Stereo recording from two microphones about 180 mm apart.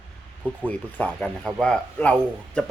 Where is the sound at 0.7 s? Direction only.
10° left (ahead or behind).